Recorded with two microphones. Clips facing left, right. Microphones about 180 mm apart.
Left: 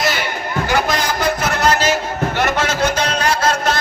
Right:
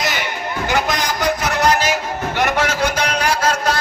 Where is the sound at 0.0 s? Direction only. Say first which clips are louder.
Left 2 dB; 15° right (ahead or behind).